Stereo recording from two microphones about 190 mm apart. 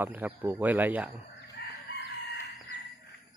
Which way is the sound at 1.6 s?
60° left (ahead or behind).